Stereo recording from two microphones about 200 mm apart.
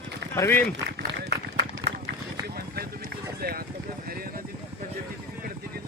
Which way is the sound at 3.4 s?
50° right (ahead or behind).